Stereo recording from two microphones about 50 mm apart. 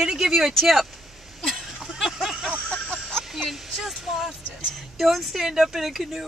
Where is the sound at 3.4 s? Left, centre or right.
Centre.